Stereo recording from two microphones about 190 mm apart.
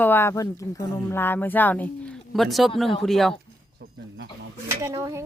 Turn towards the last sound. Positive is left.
turn(degrees=-15)  # may be behind; listen again after turning